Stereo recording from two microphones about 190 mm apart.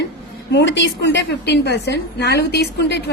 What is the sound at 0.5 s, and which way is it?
A woman's voice, 70° left (ahead or behind).